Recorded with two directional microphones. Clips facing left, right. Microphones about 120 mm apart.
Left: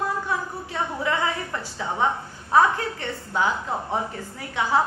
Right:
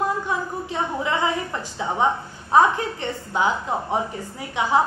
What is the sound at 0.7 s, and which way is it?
A woman's voice, 20° right (ahead or behind).